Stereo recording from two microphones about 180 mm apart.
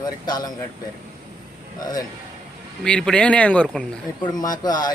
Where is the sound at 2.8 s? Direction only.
5° left (ahead or behind).